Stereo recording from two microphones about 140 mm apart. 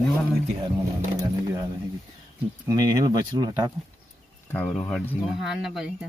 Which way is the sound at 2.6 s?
25° right (ahead or behind).